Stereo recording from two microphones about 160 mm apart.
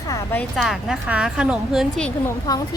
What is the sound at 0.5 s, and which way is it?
A woman's voice, centre (ahead or behind).